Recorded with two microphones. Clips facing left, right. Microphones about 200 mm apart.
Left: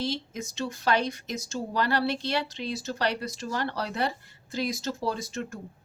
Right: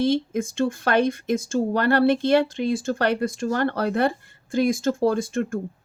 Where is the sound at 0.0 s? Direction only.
50° right (ahead or behind).